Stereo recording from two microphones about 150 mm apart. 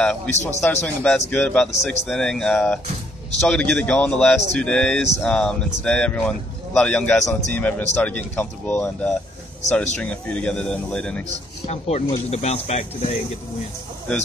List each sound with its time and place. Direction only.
0.3 s speech: 50° left (ahead or behind)
0.8 s speech: 10° left (ahead or behind)
11.6 s speech: 45° left (ahead or behind)